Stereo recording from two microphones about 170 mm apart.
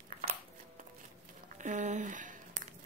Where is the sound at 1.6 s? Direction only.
45° right (ahead or behind).